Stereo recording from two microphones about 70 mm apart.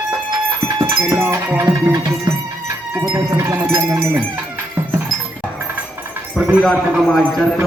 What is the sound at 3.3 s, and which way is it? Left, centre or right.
Speech, right.